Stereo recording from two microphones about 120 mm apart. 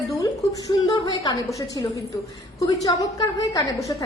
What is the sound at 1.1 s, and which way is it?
A woman's voice, 40° left (ahead or behind).